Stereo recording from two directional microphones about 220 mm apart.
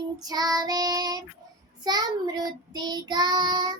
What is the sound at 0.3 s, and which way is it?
Child singing, 15° right (ahead or behind).